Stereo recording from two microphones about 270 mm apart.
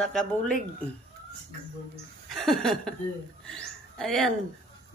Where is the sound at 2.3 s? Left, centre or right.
Centre.